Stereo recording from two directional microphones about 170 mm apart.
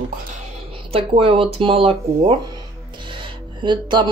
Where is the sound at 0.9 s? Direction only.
35° right (ahead or behind).